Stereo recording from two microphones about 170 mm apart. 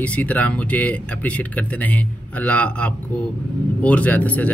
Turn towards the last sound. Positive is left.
turn(degrees=10)  # may be behind; listen again after turning